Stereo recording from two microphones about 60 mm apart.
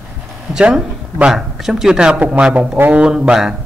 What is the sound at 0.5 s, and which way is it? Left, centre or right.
Speech, centre.